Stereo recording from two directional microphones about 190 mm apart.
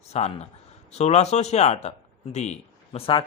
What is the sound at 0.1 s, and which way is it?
Speech, 35° left (ahead or behind).